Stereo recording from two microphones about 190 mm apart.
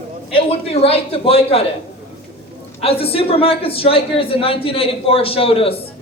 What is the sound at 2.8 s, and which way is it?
A woman's voice, 30° left (ahead or behind).